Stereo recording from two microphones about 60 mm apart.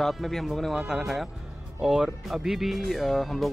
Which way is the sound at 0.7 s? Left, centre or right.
Centre.